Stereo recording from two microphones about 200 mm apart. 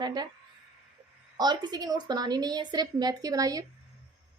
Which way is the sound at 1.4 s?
20° right (ahead or behind).